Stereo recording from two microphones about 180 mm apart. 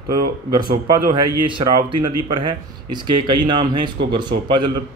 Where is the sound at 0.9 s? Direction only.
25° right (ahead or behind).